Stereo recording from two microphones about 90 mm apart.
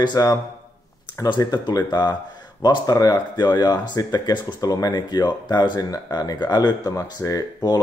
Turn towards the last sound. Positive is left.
turn(degrees=45)  # may be behind; listen again after turning